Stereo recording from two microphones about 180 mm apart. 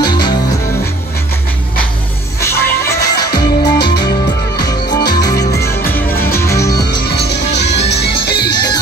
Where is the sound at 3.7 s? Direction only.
65° left (ahead or behind).